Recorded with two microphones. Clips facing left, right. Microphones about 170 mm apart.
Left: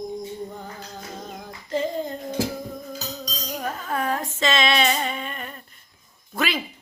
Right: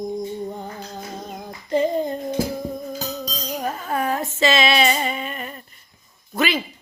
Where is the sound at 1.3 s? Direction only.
15° right (ahead or behind).